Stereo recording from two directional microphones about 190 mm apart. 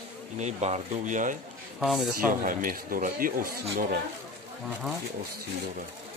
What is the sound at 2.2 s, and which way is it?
Speech, 45° right (ahead or behind).